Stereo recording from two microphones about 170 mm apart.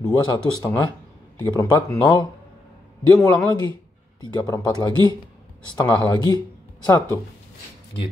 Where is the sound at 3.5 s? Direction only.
25° left (ahead or behind).